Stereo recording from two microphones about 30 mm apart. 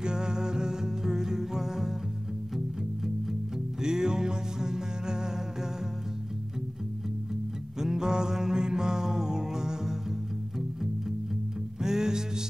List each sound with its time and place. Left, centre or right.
0.0 s music: right
3.8 s music: right
7.8 s music: right
11.8 s music: centre